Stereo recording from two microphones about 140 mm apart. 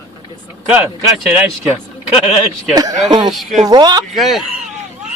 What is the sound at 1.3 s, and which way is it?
Speech, 10° right (ahead or behind).